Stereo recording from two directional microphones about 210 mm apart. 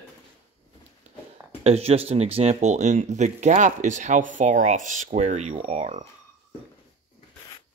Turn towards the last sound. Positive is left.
turn(degrees=-30)  # may be behind; listen again after turning